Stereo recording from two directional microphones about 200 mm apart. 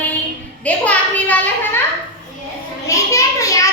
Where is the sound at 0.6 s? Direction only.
5° left (ahead or behind).